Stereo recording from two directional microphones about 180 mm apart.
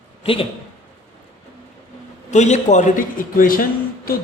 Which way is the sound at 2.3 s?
40° left (ahead or behind).